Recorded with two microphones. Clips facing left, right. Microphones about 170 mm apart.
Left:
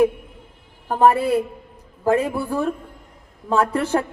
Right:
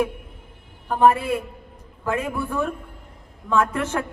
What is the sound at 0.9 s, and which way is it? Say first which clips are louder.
A man's voice: left 2 dB; 40° left (ahead or behind).